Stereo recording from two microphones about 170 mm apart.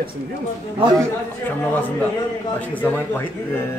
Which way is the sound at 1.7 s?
10° left (ahead or behind).